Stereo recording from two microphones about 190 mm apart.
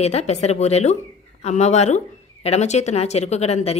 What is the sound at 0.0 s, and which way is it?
Speech, 35° left (ahead or behind).